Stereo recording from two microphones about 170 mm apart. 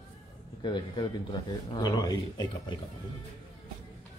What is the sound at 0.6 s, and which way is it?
A man's voice, 25° left (ahead or behind).